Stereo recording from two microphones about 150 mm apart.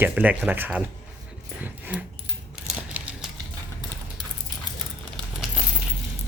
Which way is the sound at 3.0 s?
10° right (ahead or behind).